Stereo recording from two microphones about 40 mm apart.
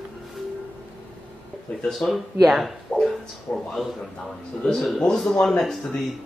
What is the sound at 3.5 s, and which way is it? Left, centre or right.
Speech, left.